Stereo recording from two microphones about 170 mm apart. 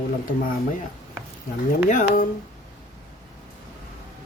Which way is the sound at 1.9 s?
50° left (ahead or behind).